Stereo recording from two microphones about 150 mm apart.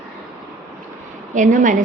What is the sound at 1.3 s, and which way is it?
Speech, 60° right (ahead or behind).